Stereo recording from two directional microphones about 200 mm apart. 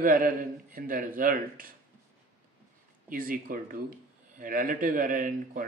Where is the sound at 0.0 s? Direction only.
45° right (ahead or behind).